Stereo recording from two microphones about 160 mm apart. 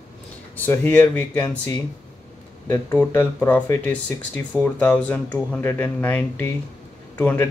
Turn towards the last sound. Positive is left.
turn(degrees=10)  # may be behind; listen again after turning